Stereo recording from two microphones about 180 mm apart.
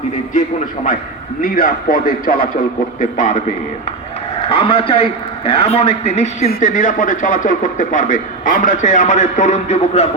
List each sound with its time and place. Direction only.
1.4 s speech: 50° left (ahead or behind)
4.4 s a man's voice: 30° left (ahead or behind)